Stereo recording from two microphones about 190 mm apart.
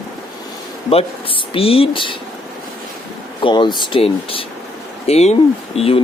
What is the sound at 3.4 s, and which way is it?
Speech, 25° left (ahead or behind).